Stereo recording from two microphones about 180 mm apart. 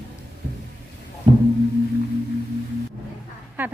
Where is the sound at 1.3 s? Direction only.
30° right (ahead or behind).